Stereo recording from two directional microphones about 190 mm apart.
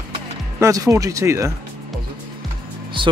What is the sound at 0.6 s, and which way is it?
Speech, 15° right (ahead or behind).